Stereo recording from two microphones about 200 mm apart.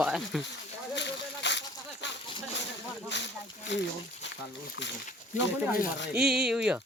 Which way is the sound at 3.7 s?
60° left (ahead or behind).